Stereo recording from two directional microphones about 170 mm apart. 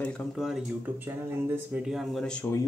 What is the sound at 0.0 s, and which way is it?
Speech, centre (ahead or behind).